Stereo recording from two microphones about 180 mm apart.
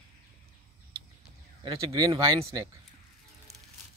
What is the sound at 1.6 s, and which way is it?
Speech, 25° right (ahead or behind).